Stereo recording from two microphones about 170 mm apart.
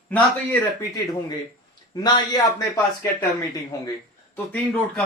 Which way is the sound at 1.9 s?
20° left (ahead or behind).